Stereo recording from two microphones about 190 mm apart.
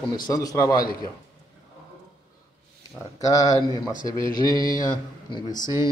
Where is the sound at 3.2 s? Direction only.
15° left (ahead or behind).